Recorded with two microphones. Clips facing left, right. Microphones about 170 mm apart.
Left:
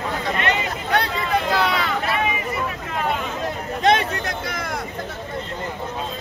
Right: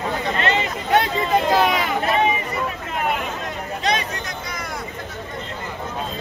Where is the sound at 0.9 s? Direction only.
20° right (ahead or behind).